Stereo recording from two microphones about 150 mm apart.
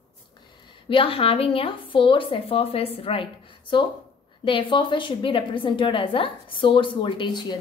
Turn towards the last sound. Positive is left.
turn(degrees=30)  # may be behind; listen again after turning